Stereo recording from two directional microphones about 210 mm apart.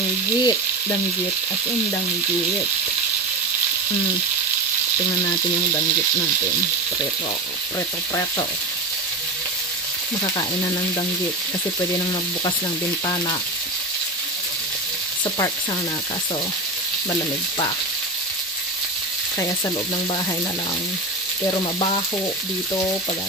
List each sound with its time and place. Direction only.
0.4 s frying: 20° left (ahead or behind)
13.0 s frying: 20° left (ahead or behind)
21.5 s frying: 25° left (ahead or behind)